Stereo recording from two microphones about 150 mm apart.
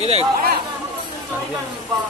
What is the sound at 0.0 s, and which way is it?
Speech, 45° right (ahead or behind).